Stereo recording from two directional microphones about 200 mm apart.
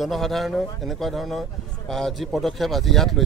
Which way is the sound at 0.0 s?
Centre (ahead or behind).